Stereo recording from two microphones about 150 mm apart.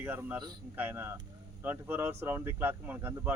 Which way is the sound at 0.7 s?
10° right (ahead or behind).